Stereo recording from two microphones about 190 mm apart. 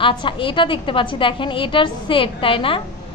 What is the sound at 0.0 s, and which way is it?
A woman's voice, 25° left (ahead or behind).